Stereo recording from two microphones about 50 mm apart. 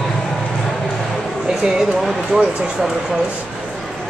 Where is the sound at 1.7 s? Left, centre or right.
Centre.